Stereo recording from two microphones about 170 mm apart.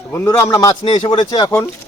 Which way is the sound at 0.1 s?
15° left (ahead or behind).